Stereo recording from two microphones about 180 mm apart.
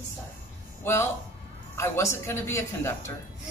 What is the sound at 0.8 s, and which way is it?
Speech, 15° left (ahead or behind).